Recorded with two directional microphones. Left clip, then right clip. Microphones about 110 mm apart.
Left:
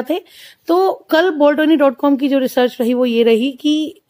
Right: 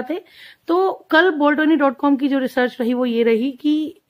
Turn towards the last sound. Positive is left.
turn(degrees=25)  # may be behind; listen again after turning